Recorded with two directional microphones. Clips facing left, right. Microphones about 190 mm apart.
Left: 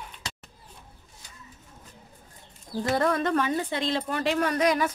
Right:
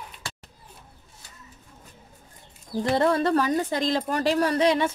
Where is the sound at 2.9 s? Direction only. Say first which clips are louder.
Right 3 dB; 30° right (ahead or behind).